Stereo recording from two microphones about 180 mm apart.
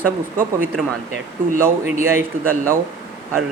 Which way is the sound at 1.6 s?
15° right (ahead or behind).